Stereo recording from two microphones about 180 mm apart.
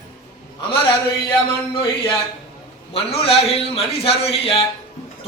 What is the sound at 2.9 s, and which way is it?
A man's voice, 35° left (ahead or behind).